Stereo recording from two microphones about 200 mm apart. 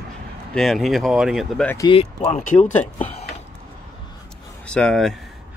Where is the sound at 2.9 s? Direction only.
30° left (ahead or behind).